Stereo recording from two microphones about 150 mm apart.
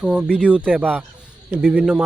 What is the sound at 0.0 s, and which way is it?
Speech, 5° right (ahead or behind).